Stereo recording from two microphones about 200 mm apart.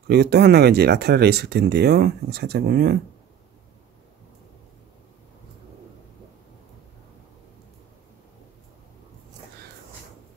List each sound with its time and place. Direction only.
0.1 s speech: 55° right (ahead or behind)